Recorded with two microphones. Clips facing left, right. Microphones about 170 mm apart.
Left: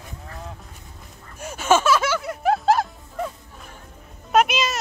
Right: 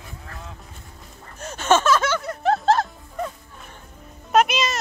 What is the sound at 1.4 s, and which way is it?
Music, 10° left (ahead or behind).